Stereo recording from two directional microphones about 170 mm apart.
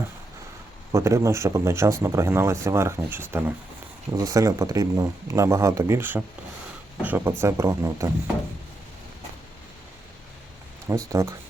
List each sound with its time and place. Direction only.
0.9 s speech: 15° right (ahead or behind)
11.1 s speech: 15° right (ahead or behind)